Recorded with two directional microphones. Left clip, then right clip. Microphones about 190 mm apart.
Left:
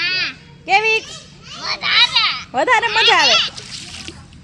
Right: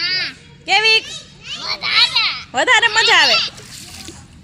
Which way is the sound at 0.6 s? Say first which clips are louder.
Right 2 dB; 10° left (ahead or behind).